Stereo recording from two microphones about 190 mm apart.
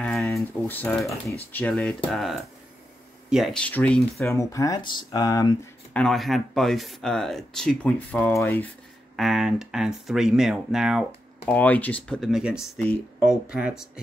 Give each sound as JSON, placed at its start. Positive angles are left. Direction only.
{"t": 0.0, "sound": "a sound", "side_deg": 0}
{"t": 0.3, "sound": "speech", "side_deg": 10}
{"t": 4.3, "sound": "speech", "side_deg": 15}
{"t": 5.9, "sound": "speech", "side_deg": 0}
{"t": 9.1, "sound": "speech", "side_deg": 0}
{"t": 11.4, "sound": "speech", "side_deg": 10}